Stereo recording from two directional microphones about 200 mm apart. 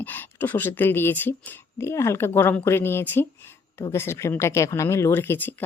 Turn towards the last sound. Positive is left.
turn(degrees=10)  # may be behind; listen again after turning